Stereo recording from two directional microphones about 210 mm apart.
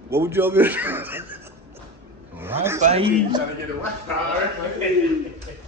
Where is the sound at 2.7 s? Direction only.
30° right (ahead or behind).